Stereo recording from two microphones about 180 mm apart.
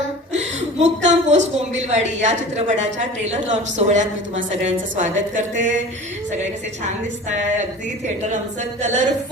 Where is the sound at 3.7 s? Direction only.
40° right (ahead or behind).